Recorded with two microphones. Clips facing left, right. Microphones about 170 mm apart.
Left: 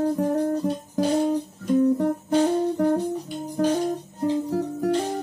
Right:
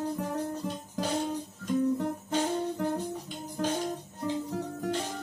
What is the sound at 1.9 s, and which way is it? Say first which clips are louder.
Music: left 8 dB; 40° left (ahead or behind).